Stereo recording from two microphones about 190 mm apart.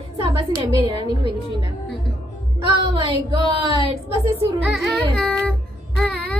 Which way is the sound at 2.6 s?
25° right (ahead or behind).